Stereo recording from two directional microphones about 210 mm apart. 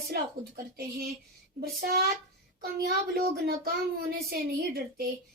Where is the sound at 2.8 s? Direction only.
45° right (ahead or behind).